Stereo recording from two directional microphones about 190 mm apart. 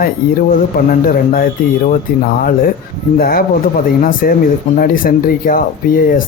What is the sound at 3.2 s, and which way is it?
Speech, 50° left (ahead or behind).